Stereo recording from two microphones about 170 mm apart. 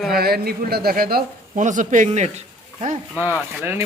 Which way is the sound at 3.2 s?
10° right (ahead or behind).